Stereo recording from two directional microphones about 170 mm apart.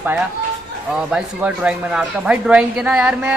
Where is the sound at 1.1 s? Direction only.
5° right (ahead or behind).